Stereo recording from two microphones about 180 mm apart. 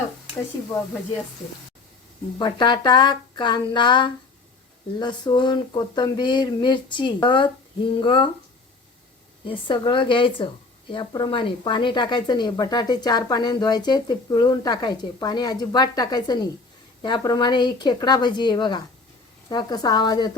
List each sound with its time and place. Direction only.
2.4 s speech: 25° left (ahead or behind)
9.4 s speech: 25° left (ahead or behind)